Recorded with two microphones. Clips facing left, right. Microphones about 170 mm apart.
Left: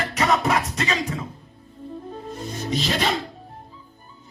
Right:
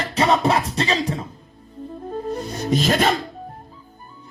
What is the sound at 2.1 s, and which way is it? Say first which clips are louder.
Music: right 9 dB; 50° right (ahead or behind).